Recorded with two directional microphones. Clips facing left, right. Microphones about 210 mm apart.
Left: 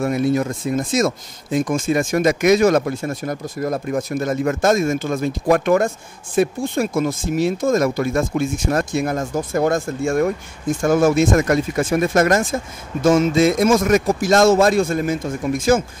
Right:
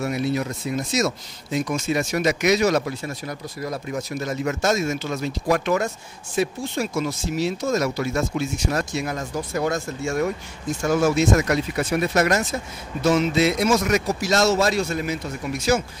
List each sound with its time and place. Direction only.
0.0 s speech: 50° left (ahead or behind)